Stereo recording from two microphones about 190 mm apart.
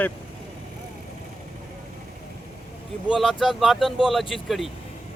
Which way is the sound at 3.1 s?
Centre (ahead or behind).